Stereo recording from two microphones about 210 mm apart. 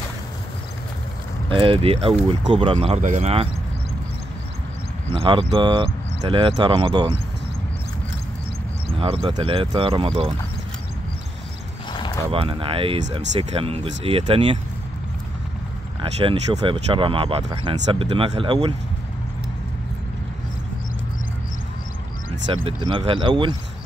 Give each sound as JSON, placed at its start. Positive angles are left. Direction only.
{"t": 1.5, "sound": "speech", "side_deg": -25}
{"t": 5.1, "sound": "speech", "side_deg": -25}
{"t": 8.9, "sound": "speech", "side_deg": -25}
{"t": 11.9, "sound": "a sound", "side_deg": 20}
{"t": 12.3, "sound": "speech", "side_deg": -25}
{"t": 16.0, "sound": "speech", "side_deg": -25}
{"t": 22.5, "sound": "speech", "side_deg": -25}